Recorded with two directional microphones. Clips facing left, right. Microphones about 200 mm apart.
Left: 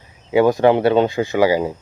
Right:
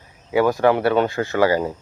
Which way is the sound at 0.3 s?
20° left (ahead or behind).